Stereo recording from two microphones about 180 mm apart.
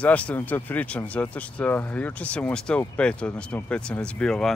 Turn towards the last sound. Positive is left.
turn(degrees=5)  # may be behind; listen again after turning